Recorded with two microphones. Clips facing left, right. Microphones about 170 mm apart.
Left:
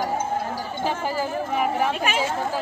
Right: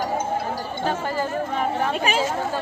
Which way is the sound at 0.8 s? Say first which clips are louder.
Even; 10° left (ahead or behind).